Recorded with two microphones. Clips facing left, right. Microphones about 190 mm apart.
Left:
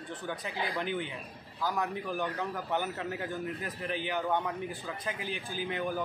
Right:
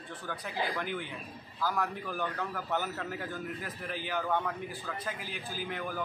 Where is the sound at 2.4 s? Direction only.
15° left (ahead or behind).